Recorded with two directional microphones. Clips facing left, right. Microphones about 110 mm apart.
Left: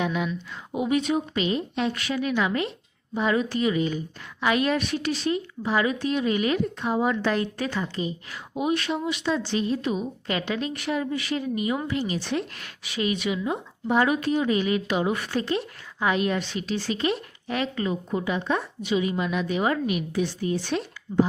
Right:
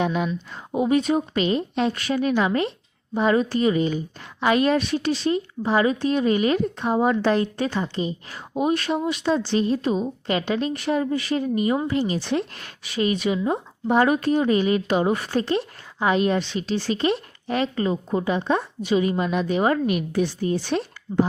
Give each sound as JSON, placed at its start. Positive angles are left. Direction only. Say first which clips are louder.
{"t": 0.0, "sound": "speech", "louder": "right 3 dB", "side_deg": -35}
{"t": 8.5, "sound": "speech", "louder": "right 3 dB", "side_deg": -40}